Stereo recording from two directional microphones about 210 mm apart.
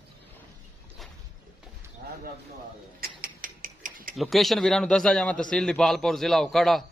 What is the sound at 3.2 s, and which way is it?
Mechanisms, 40° right (ahead or behind).